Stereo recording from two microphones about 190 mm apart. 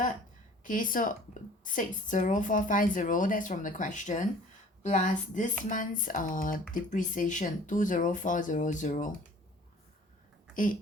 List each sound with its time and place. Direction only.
0.6 s a woman's voice: 45° left (ahead or behind)
10.5 s speech: 45° left (ahead or behind)